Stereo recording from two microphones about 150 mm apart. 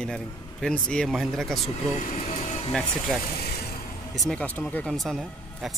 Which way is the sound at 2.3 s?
45° left (ahead or behind).